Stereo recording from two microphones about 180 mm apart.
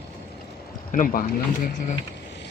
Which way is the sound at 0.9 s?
50° left (ahead or behind).